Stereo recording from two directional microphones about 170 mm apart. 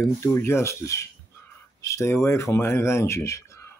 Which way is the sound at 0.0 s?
15° left (ahead or behind).